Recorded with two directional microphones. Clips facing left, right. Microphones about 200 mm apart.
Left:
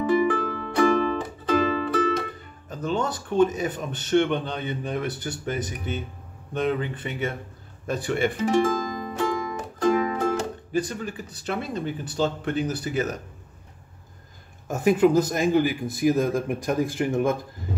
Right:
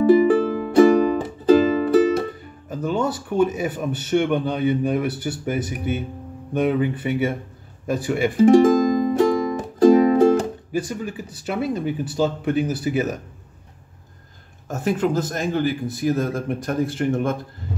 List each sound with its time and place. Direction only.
0.1 s music: 30° right (ahead or behind)
2.7 s speech: 10° right (ahead or behind)
8.6 s music: 20° right (ahead or behind)
9.8 s music: 35° right (ahead or behind)
11.4 s speech: 5° right (ahead or behind)
14.7 s speech: 15° left (ahead or behind)